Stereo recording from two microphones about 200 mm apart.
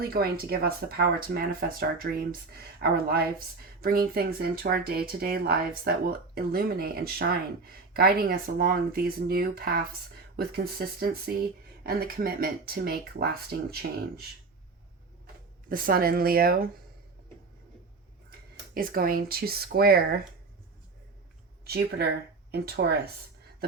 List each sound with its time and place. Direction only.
0.0 s speech: 50° right (ahead or behind)
15.7 s speech: 45° right (ahead or behind)
18.3 s speech: 45° right (ahead or behind)
21.6 s speech: 55° right (ahead or behind)